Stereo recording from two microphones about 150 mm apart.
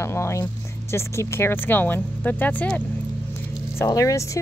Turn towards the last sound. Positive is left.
turn(degrees=20)  # may be behind; listen again after turning